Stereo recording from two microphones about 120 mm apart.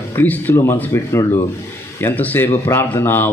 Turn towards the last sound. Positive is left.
turn(degrees=15)  # may be behind; listen again after turning